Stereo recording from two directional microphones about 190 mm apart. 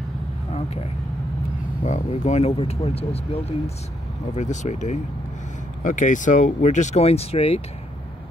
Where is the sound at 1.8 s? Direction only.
40° left (ahead or behind).